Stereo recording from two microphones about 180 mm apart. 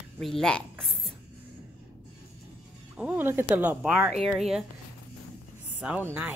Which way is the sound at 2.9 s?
10° right (ahead or behind).